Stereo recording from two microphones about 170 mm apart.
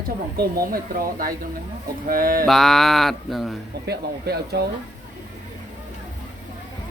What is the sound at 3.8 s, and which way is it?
Speech, 70° right (ahead or behind).